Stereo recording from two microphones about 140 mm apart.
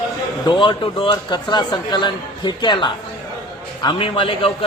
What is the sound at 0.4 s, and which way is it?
A man's voice, 35° left (ahead or behind).